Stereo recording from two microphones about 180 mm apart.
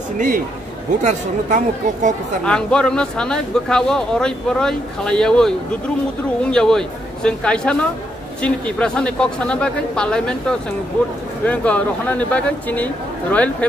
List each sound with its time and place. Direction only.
1.0 s speech: 45° right (ahead or behind)
2.4 s speech: 5° left (ahead or behind)